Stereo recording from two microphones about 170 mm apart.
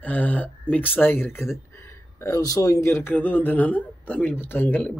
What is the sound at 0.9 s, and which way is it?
Speech, 10° left (ahead or behind).